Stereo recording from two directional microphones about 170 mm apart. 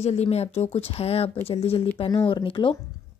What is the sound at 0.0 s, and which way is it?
A woman's voice, 40° left (ahead or behind).